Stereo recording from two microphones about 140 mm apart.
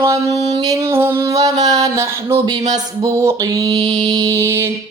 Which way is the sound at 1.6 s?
55° right (ahead or behind).